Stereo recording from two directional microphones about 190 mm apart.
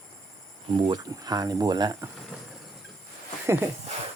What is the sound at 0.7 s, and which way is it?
Speech, 25° right (ahead or behind).